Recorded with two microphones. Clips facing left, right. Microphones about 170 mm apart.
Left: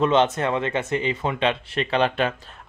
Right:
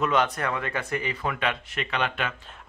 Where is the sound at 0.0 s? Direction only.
25° left (ahead or behind).